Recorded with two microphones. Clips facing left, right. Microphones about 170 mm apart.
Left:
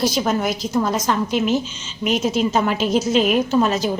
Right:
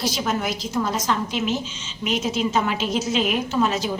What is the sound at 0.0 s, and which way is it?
A woman's voice, 40° left (ahead or behind).